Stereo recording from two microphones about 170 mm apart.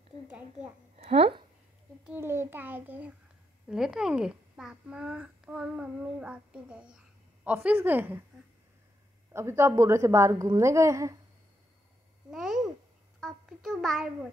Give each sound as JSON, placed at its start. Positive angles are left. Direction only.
{"t": 0.9, "sound": "speech", "side_deg": -35}
{"t": 2.0, "sound": "a woman's voice", "side_deg": -15}
{"t": 9.3, "sound": "a woman's voice", "side_deg": -15}
{"t": 12.3, "sound": "a child's voice", "side_deg": 0}